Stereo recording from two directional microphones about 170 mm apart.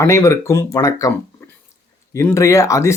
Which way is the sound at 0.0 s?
15° left (ahead or behind).